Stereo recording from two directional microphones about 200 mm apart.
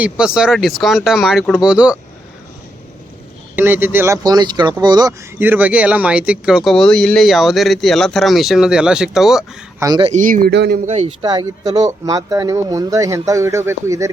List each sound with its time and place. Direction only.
0.0 s speech: 5° right (ahead or behind)
3.5 s speech: 10° right (ahead or behind)
9.8 s speech: 20° right (ahead or behind)
10.1 s speech: 40° right (ahead or behind)
10.5 s speech: 55° right (ahead or behind)
10.8 s speech: 35° right (ahead or behind)
11.3 s speech: 20° right (ahead or behind)